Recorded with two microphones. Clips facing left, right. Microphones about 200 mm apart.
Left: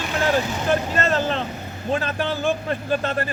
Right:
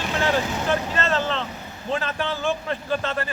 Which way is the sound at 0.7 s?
45° left (ahead or behind).